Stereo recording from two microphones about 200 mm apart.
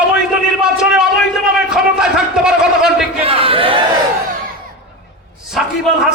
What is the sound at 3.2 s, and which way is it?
Speech, 30° right (ahead or behind).